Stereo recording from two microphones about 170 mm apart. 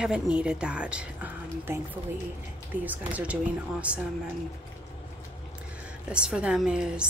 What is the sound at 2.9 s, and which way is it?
A woman's voice, 10° right (ahead or behind).